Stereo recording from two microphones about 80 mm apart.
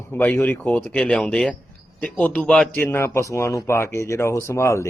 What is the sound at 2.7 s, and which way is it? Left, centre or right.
Speech, left.